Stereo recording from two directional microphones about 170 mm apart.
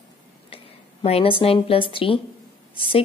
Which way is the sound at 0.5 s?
35° left (ahead or behind).